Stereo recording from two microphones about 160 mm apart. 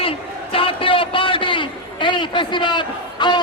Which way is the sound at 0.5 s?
35° left (ahead or behind).